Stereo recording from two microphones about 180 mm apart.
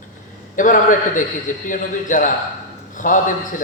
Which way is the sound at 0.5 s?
45° left (ahead or behind).